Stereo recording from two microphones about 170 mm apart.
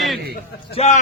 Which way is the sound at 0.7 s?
40° left (ahead or behind).